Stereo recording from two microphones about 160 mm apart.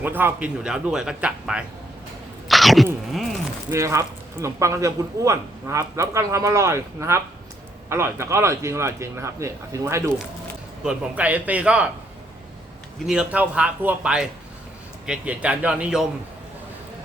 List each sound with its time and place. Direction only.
0.0 s speech: 10° right (ahead or behind)
2.5 s a sound: centre (ahead or behind)
3.7 s speech: 20° right (ahead or behind)
13.1 s speech: 5° right (ahead or behind)